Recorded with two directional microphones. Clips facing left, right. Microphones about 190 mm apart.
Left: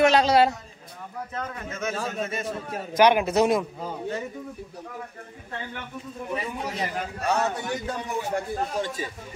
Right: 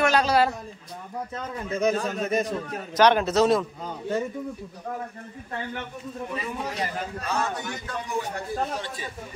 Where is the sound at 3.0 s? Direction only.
10° left (ahead or behind).